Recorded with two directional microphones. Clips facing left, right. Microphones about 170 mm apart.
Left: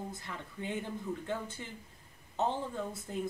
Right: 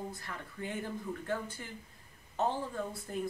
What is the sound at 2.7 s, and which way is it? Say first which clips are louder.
Speech: even; 20° left (ahead or behind).